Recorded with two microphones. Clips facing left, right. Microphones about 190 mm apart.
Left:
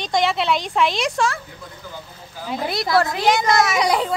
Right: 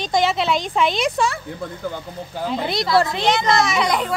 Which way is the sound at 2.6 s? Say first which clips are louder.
Even; 5° left (ahead or behind).